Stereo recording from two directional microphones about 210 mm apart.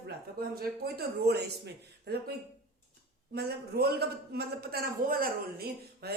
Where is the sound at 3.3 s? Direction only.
50° right (ahead or behind).